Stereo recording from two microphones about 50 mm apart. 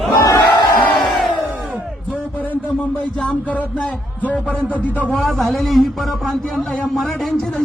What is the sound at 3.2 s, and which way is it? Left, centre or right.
Music, left.